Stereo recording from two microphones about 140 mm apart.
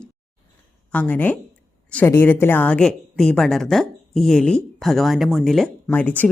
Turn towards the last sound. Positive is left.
turn(degrees=10)  # may be behind; listen again after turning